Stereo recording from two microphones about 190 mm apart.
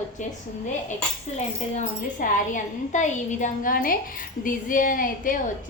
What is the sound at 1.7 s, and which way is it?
A woman's voice, 40° left (ahead or behind).